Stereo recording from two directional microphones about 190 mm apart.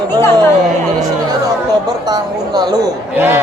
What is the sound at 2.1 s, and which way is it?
A woman's voice, 20° right (ahead or behind).